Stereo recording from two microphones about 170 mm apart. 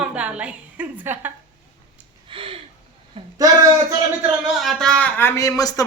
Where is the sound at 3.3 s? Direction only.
20° right (ahead or behind).